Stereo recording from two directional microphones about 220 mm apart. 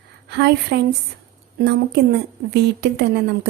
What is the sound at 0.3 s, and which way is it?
A woman's voice, 50° right (ahead or behind).